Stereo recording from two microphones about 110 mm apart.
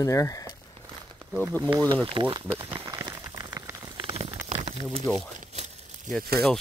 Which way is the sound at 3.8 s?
40° right (ahead or behind).